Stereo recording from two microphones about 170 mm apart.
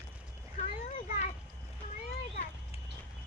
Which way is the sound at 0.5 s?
50° left (ahead or behind).